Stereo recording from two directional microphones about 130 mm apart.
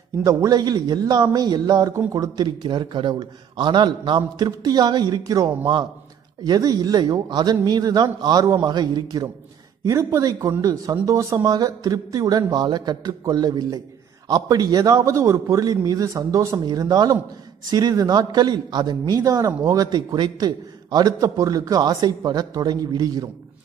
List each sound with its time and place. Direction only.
0.2 s a man's voice: 25° right (ahead or behind)